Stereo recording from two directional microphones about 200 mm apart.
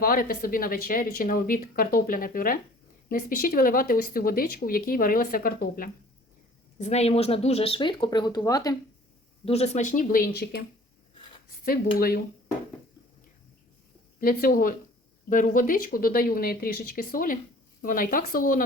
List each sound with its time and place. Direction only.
0.0 s speech: 45° left (ahead or behind)
6.7 s speech: 35° left (ahead or behind); by 8.7 s 15° left (ahead or behind)
9.4 s speech: 30° left (ahead or behind); by 10.6 s 55° left (ahead or behind)
11.9 s speech: 50° left (ahead or behind)
14.2 s speech: 45° left (ahead or behind)